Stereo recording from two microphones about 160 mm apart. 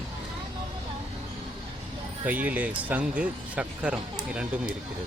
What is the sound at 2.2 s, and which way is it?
Speech, 10° right (ahead or behind).